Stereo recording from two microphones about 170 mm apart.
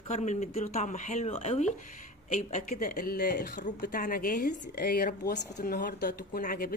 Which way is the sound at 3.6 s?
55° left (ahead or behind).